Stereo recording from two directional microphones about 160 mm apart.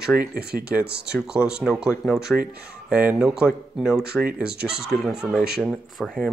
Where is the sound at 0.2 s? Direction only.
75° right (ahead or behind).